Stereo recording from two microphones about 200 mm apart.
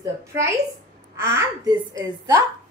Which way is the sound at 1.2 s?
15° right (ahead or behind).